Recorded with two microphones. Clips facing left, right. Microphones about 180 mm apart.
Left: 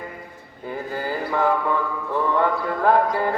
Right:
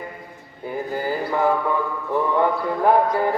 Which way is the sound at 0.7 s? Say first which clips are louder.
Right 2 dB; 15° right (ahead or behind).